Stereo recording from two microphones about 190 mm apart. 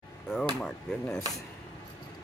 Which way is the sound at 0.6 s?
5° left (ahead or behind).